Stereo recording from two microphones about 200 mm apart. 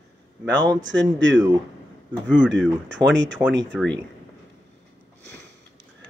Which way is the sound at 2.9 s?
65° right (ahead or behind).